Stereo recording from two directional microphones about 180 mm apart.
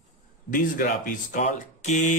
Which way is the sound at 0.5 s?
50° left (ahead or behind).